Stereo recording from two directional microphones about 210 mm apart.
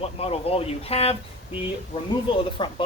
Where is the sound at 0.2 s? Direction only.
30° left (ahead or behind).